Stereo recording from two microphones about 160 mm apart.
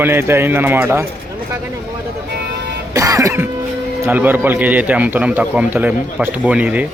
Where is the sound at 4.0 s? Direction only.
15° right (ahead or behind).